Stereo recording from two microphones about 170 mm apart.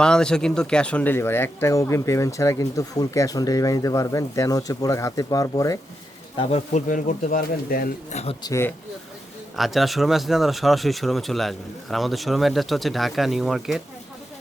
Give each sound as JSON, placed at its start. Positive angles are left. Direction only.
{"t": 0.0, "sound": "speech", "side_deg": 5}
{"t": 6.3, "sound": "speech", "side_deg": 35}
{"t": 8.1, "sound": "speech", "side_deg": 40}
{"t": 8.4, "sound": "speech", "side_deg": 15}
{"t": 9.6, "sound": "speech", "side_deg": 0}